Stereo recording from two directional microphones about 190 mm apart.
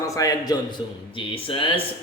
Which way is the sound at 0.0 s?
20° left (ahead or behind).